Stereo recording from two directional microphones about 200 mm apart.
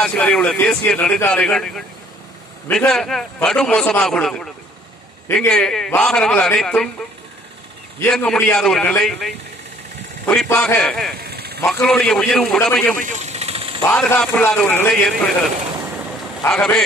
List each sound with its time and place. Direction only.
0.0 s a man's voice: 5° left (ahead or behind)
8.0 s a man's voice: 5° left (ahead or behind)
11.2 s vehicle: 50° right (ahead or behind)
11.6 s a man's voice: 5° left (ahead or behind)
13.0 s engine: 35° right (ahead or behind)
13.8 s speech: 10° left (ahead or behind)
16.4 s a man's voice: 5° left (ahead or behind)